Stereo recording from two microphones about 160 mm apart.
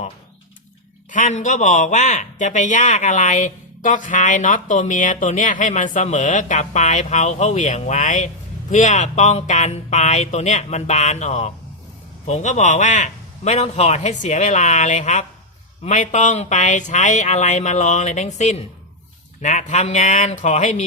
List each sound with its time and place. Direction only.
1.1 s speech: 50° left (ahead or behind)